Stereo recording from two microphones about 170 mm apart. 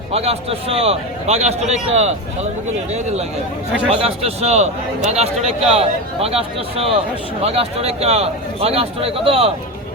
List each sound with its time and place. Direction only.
0.1 s a man's voice: 35° right (ahead or behind)
4.0 s a man's voice: 40° right (ahead or behind)